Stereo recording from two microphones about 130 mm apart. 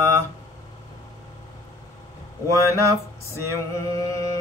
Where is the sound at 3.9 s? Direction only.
25° left (ahead or behind).